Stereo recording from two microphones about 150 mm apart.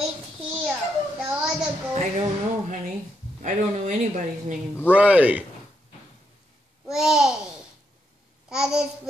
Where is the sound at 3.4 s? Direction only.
50° right (ahead or behind).